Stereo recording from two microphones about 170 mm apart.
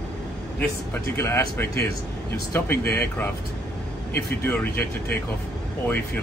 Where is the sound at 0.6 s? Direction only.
15° left (ahead or behind).